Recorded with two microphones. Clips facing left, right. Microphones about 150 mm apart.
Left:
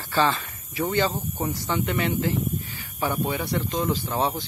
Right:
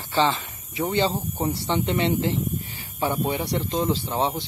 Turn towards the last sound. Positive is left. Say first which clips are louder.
# right 1 dB
turn(degrees=-20)  # may be behind; listen again after turning